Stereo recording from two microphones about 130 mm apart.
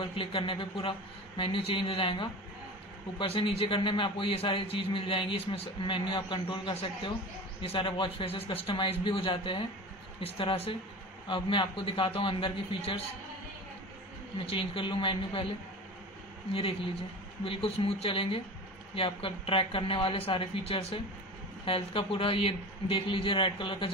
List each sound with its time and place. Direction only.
0.0 s a man's voice: 40° left (ahead or behind)
6.7 s a man's voice: 50° left (ahead or behind)
14.4 s a man's voice: 45° left (ahead or behind)
16.5 s a man's voice: 45° left (ahead or behind)